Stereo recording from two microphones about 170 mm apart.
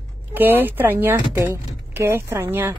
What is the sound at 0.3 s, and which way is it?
Speech, 10° right (ahead or behind).